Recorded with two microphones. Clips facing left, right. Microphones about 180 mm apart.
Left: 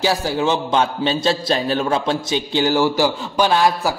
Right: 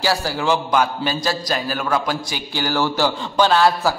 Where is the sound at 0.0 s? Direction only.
20° left (ahead or behind).